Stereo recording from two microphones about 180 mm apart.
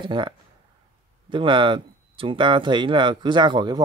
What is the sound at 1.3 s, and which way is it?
Speech, 25° right (ahead or behind).